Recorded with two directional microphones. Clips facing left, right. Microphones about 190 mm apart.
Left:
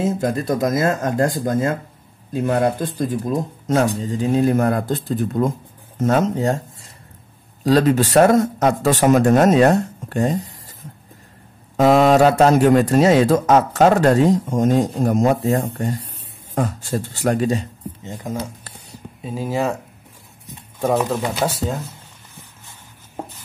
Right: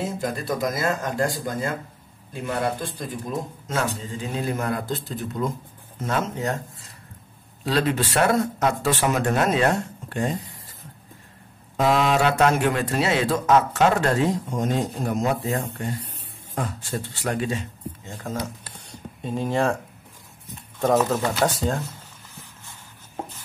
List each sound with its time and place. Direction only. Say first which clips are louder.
0.0 s a man's voice: left 7 dB; 45° left (ahead or behind)
4.6 s speech: left 8 dB; 50° left (ahead or behind)
6.0 s a man's voice: left 8 dB; 40° left (ahead or behind)
7.6 s a man's voice: left 8 dB; 40° left (ahead or behind)
11.7 s a man's voice: left 7 dB; 45° left (ahead or behind)
17.1 s a man's voice: left 8 dB; 40° left (ahead or behind)
18.0 s speech: left 4 dB; 15° left (ahead or behind)
18.7 s a sound: left 1 dB; 5° left (ahead or behind)
20.8 s speech: left 1 dB; 10° left (ahead or behind)